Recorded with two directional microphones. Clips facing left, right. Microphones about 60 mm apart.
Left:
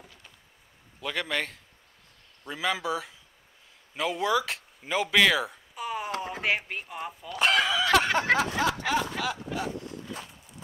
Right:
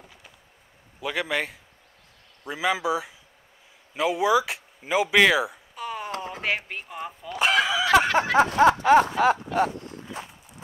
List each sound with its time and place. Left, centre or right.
1.0 s speech: centre
5.8 s a sound: centre
8.4 s speech: right